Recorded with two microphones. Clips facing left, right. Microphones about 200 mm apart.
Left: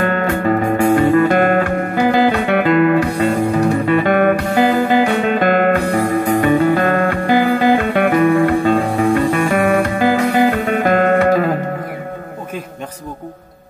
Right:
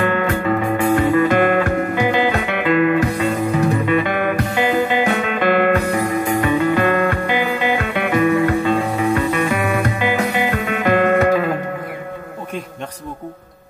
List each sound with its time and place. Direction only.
0.0 s music: 40° left (ahead or behind)